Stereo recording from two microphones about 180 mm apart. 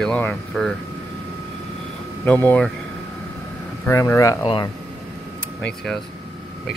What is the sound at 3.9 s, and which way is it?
Speech, 15° left (ahead or behind).